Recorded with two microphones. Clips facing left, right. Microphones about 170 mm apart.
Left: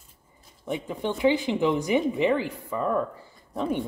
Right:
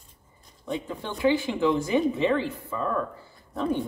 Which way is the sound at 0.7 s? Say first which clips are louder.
Left 3 dB; 20° left (ahead or behind).